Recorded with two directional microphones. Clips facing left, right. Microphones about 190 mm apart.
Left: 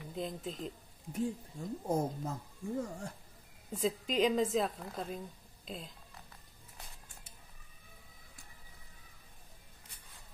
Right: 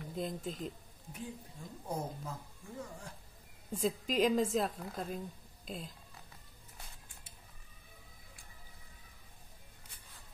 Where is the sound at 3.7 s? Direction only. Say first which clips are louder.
Even; centre (ahead or behind).